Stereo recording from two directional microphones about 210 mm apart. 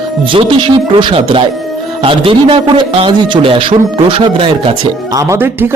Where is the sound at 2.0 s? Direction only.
25° right (ahead or behind).